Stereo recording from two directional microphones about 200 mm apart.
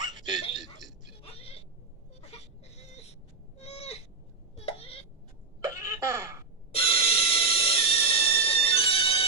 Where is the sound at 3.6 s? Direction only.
30° left (ahead or behind).